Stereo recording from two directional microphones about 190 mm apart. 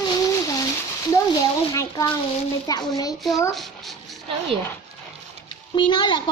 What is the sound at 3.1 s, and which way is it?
Speech, centre (ahead or behind).